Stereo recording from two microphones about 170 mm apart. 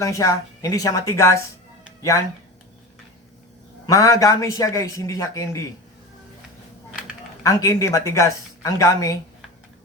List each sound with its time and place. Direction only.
0.0 s speech: 20° left (ahead or behind)
3.8 s a man's voice: 20° left (ahead or behind)
7.4 s speech: 20° left (ahead or behind)